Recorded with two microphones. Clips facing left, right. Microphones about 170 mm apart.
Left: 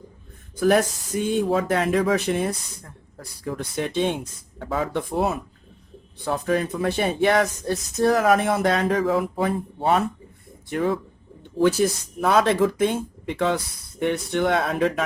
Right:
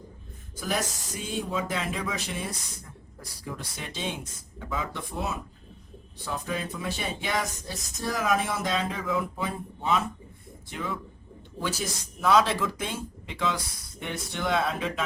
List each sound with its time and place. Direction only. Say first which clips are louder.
0.5 s speech: left 12 dB; 60° left (ahead or behind)
9.3 s speech: left 9 dB; 60° left (ahead or behind)